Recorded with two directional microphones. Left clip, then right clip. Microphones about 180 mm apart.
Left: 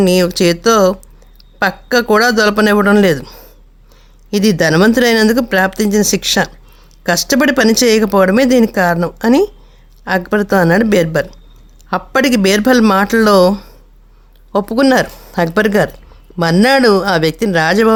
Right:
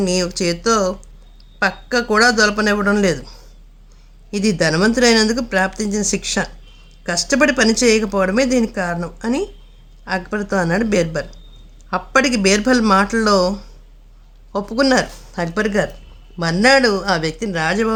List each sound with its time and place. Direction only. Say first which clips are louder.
0.0 s speech: left 8 dB; 45° left (ahead or behind)